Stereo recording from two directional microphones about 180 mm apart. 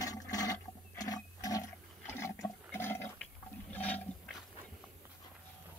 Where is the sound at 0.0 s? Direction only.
20° left (ahead or behind).